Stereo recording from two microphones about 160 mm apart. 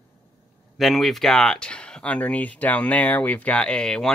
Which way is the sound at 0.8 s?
Centre (ahead or behind).